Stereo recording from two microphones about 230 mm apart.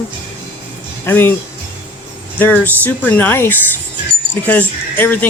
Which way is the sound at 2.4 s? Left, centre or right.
Centre.